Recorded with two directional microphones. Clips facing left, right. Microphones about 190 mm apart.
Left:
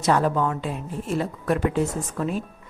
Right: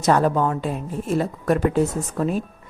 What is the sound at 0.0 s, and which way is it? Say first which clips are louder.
A woman's voice: right 3 dB; 45° right (ahead or behind).